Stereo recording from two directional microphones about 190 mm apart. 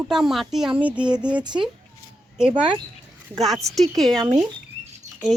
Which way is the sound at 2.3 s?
5° right (ahead or behind).